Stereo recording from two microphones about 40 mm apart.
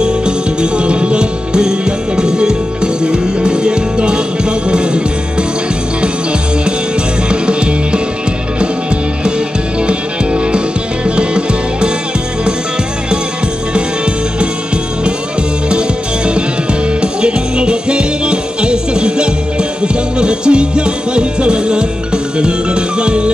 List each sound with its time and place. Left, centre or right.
0.0 s music: right
7.2 s music: right
9.8 s music: right
17.0 s music: right